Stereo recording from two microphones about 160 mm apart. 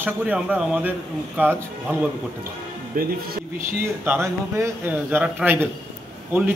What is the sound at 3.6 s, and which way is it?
Speech, 15° right (ahead or behind).